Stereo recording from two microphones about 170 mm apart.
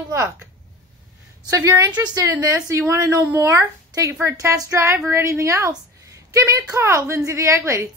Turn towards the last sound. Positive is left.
turn(degrees=-15)  # may be behind; listen again after turning